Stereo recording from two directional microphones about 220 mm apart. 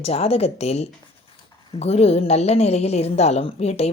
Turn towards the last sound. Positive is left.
turn(degrees=30)  # may be behind; listen again after turning